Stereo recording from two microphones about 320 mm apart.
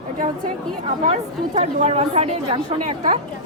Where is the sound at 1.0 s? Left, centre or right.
Right.